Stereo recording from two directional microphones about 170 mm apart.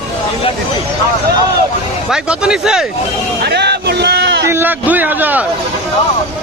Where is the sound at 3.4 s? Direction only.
75° right (ahead or behind).